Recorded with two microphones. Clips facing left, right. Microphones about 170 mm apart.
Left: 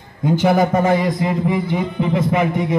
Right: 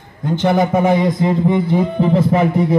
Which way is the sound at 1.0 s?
25° right (ahead or behind).